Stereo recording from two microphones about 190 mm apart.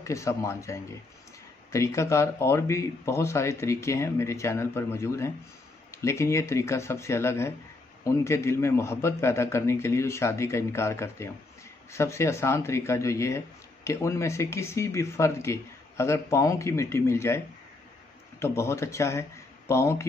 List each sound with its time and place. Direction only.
0.0 s speech: 15° left (ahead or behind)
18.4 s speech: 15° left (ahead or behind)